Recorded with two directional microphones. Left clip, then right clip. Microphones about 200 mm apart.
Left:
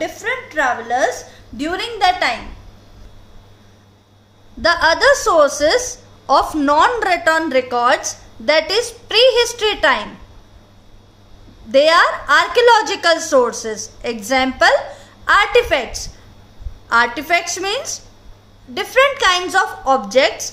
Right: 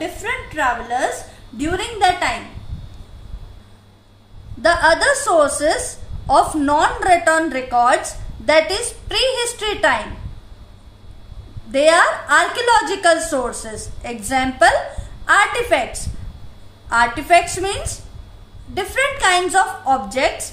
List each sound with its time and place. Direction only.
0.0 s a woman's voice: 45° left (ahead or behind)
4.6 s a woman's voice: 50° left (ahead or behind)
11.7 s a woman's voice: 50° left (ahead or behind)
16.9 s a woman's voice: 45° left (ahead or behind)